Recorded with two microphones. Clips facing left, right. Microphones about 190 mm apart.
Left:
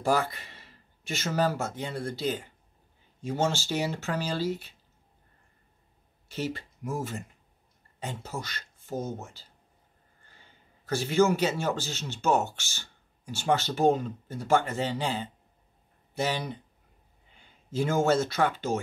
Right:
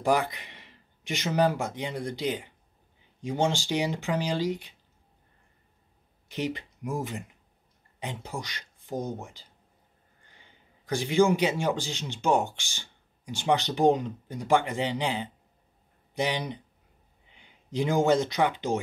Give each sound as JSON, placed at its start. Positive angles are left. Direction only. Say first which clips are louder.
{"t": 0.0, "sound": "speech", "louder": "right 1 dB", "side_deg": -15}
{"t": 6.2, "sound": "a man's voice", "louder": "right 2 dB", "side_deg": -15}